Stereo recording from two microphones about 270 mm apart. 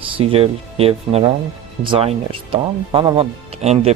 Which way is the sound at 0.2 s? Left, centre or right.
Right.